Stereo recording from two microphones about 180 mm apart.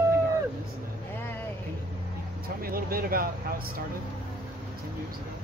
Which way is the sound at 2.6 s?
55° right (ahead or behind).